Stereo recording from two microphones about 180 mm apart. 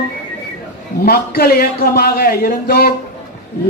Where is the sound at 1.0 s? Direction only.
60° left (ahead or behind).